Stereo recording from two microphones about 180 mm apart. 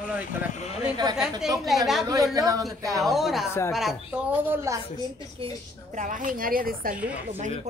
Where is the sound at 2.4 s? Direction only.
20° right (ahead or behind).